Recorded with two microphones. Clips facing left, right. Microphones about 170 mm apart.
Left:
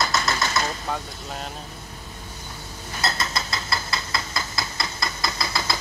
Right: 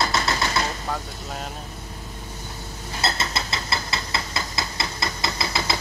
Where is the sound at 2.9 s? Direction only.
25° right (ahead or behind).